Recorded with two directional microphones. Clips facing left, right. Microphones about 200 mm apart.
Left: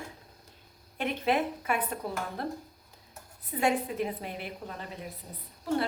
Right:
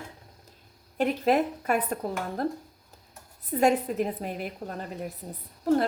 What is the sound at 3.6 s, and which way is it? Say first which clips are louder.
Speech: right 5 dB; 40° right (ahead or behind).